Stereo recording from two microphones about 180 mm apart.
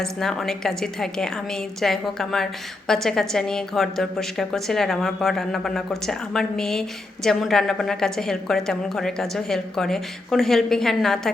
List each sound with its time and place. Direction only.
0.0 s a woman's voice: centre (ahead or behind)